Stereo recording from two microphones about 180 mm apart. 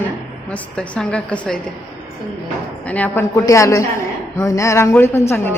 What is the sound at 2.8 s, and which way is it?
A woman's voice, 10° left (ahead or behind).